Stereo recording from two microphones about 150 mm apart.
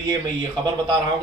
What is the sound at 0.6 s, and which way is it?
Speech, 25° right (ahead or behind).